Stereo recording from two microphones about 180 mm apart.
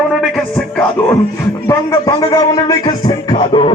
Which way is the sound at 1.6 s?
20° left (ahead or behind).